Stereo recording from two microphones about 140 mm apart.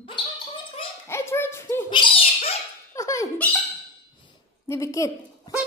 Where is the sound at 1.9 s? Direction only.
40° left (ahead or behind).